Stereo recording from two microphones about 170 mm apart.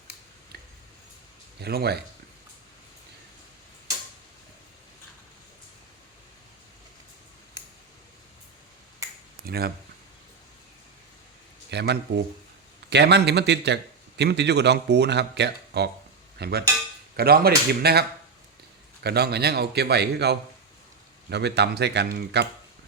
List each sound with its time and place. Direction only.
1.6 s speech: 70° right (ahead or behind)
9.5 s speech: 70° right (ahead or behind)
11.7 s a man's voice: 75° right (ahead or behind)
19.0 s a man's voice: 70° right (ahead or behind)